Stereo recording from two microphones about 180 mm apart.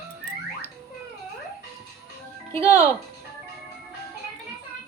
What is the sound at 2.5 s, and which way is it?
Speech, 15° left (ahead or behind).